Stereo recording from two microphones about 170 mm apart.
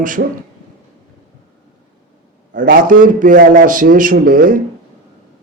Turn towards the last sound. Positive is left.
turn(degrees=-50)  # may be behind; listen again after turning